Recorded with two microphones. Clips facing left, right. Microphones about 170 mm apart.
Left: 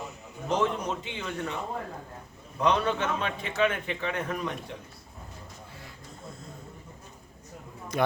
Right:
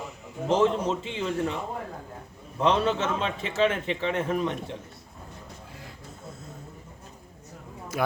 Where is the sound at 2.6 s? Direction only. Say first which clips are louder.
Right 2 dB; 30° right (ahead or behind).